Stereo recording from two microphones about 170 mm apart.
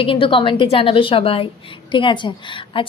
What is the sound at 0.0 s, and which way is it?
Speech, 30° left (ahead or behind).